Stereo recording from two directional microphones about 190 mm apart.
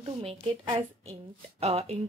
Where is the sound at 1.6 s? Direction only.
35° right (ahead or behind).